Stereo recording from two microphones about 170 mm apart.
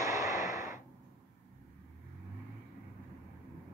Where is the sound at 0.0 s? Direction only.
20° right (ahead or behind).